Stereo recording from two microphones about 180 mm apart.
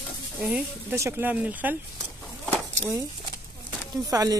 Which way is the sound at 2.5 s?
15° right (ahead or behind).